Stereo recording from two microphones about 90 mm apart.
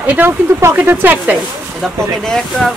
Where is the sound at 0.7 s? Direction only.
20° right (ahead or behind).